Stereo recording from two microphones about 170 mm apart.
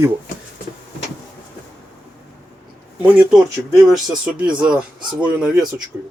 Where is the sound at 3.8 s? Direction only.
Centre (ahead or behind).